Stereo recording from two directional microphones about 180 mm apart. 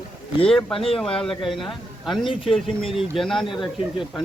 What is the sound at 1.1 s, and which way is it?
Speech, centre (ahead or behind).